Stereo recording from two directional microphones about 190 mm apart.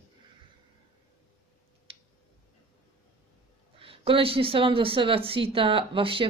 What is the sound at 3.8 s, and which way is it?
A woman's voice, 30° right (ahead or behind).